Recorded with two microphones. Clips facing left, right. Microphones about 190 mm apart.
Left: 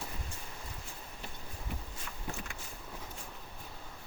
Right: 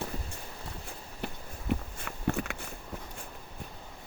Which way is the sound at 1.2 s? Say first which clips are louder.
Right 10 dB; 65° right (ahead or behind).